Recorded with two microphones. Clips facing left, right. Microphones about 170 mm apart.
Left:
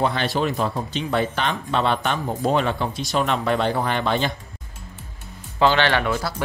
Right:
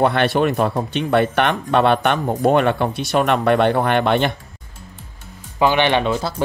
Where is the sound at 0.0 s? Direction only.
65° right (ahead or behind).